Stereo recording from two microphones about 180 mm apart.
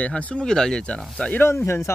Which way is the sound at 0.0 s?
5° left (ahead or behind).